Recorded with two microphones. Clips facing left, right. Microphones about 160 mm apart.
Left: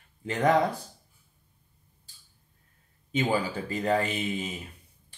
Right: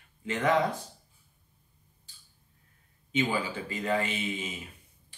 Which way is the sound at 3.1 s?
40° left (ahead or behind).